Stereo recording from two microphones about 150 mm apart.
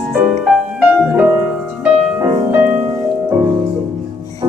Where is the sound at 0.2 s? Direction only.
5° right (ahead or behind).